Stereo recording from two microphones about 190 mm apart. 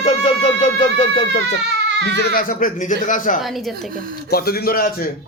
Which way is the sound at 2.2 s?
50° left (ahead or behind).